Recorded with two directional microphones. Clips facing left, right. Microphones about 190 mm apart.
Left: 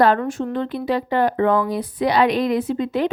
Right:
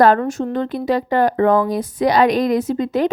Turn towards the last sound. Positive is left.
turn(degrees=-40)  # may be behind; listen again after turning